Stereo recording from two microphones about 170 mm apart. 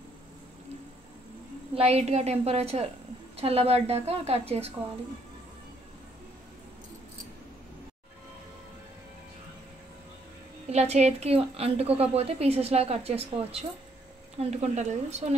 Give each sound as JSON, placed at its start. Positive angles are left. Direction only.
{"t": 1.8, "sound": "a woman's voice", "side_deg": -40}
{"t": 10.7, "sound": "a woman's voice", "side_deg": -40}